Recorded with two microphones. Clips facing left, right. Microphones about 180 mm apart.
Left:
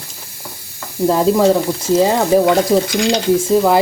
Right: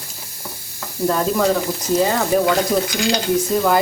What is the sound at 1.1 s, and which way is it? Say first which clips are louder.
Speech: left 6 dB; 25° left (ahead or behind).